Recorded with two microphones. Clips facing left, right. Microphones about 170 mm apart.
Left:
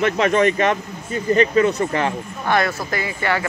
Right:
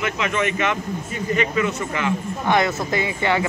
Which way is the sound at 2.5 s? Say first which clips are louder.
Even; 20° right (ahead or behind).